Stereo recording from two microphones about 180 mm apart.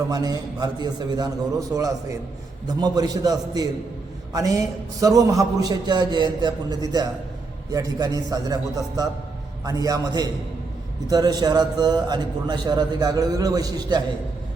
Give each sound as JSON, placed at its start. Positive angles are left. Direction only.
{"t": 0.1, "sound": "a man's voice", "side_deg": -20}